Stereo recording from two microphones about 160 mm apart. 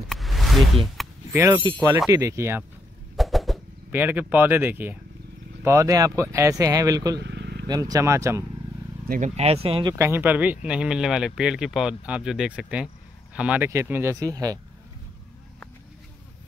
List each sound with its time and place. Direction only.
0.1 s music: centre (ahead or behind)
1.0 s a sound: centre (ahead or behind)
1.3 s speech: 15° right (ahead or behind)
1.6 s speech: 25° right (ahead or behind)
3.2 s bird: centre (ahead or behind)
3.9 s speech: 15° right (ahead or behind)
7.2 s vehicle: 90° right
7.6 s speech: 25° right (ahead or behind)
9.3 s speech: 40° right (ahead or behind)
9.9 s speech: 15° right (ahead or behind)